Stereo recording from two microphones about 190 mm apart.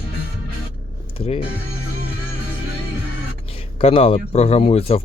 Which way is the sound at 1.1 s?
30° left (ahead or behind).